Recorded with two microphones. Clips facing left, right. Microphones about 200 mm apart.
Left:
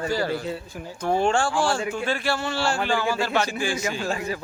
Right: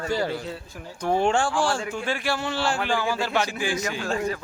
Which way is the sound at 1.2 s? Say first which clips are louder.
Even; 15° right (ahead or behind).